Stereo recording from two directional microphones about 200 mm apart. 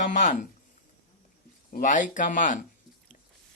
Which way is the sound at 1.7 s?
40° left (ahead or behind).